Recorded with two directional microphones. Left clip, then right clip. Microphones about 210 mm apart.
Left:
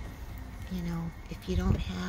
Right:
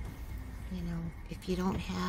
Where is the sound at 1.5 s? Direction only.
10° right (ahead or behind).